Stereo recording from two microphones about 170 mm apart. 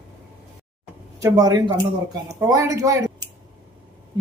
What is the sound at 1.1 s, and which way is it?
Speech, 20° right (ahead or behind).